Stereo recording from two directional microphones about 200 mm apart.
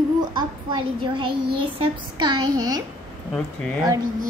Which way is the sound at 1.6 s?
25° right (ahead or behind).